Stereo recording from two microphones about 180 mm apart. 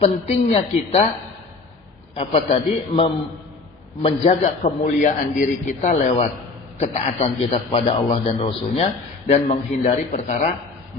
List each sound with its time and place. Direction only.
0.0 s a man's voice: 35° left (ahead or behind)
2.1 s a man's voice: 30° left (ahead or behind)